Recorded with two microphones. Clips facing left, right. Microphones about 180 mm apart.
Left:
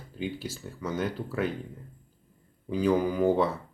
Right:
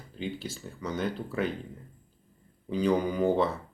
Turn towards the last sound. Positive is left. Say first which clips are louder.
# left 1 dB
turn(degrees=5)  # may be behind; listen again after turning